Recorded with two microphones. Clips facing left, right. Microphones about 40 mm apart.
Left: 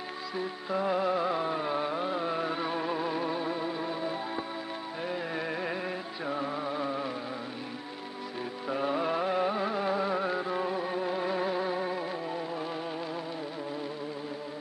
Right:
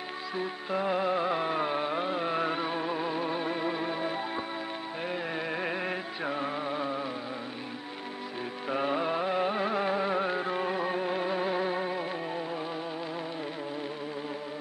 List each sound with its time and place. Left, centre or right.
0.4 s music: right
1.3 s music: right
1.7 s a sound: right
2.6 s music: centre
3.3 s music: right
5.3 s music: centre
5.6 s music: right
6.5 s music: centre
8.7 s music: right
9.0 s music: centre
9.4 s music: right
11.2 s music: centre